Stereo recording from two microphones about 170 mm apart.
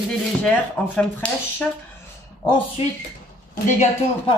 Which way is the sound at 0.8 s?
10° left (ahead or behind).